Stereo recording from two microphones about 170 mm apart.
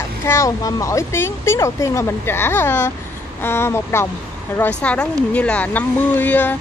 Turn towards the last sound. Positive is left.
turn(degrees=10)  # may be behind; listen again after turning